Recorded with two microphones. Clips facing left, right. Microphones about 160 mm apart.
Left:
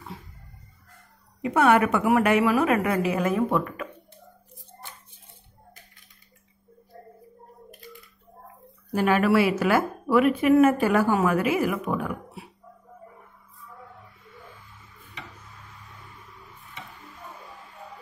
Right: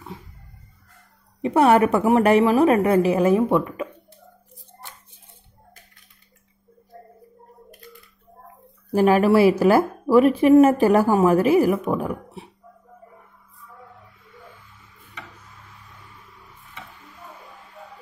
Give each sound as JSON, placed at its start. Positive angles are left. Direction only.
{"t": 1.4, "sound": "a woman's voice", "side_deg": -30}
{"t": 8.9, "sound": "a woman's voice", "side_deg": -35}